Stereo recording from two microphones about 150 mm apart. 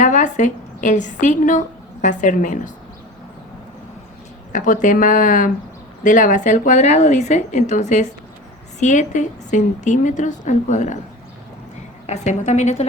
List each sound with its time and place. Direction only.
0.0 s a woman's voice: 55° left (ahead or behind)
4.5 s a woman's voice: 60° left (ahead or behind)
12.0 s speech: 50° left (ahead or behind)